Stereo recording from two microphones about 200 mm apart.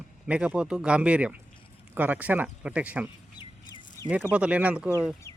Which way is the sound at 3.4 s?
20° left (ahead or behind).